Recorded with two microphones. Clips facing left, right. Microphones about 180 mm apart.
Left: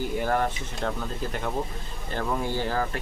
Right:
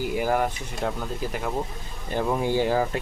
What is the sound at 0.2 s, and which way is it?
Speech, 10° right (ahead or behind).